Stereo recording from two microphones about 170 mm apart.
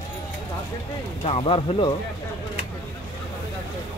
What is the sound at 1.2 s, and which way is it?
Speech, 35° left (ahead or behind).